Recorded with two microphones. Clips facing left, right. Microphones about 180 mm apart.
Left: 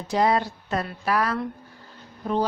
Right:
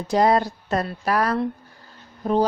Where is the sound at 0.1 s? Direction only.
40° right (ahead or behind).